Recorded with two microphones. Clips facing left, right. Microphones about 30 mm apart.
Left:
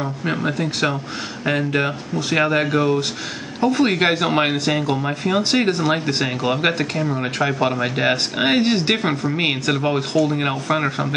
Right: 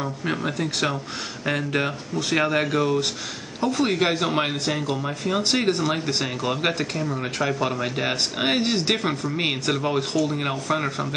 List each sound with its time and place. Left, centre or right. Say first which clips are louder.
0.0 s speech: left 4 dB; centre